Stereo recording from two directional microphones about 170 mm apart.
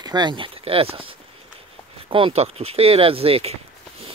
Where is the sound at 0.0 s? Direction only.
25° right (ahead or behind).